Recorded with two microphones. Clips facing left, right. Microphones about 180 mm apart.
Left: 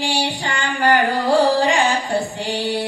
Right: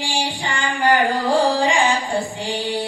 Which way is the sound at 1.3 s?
10° right (ahead or behind).